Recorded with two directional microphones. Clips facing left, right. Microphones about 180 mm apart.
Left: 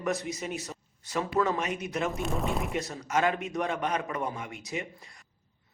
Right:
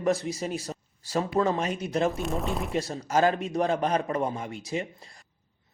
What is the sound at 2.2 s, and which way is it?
Speech, centre (ahead or behind).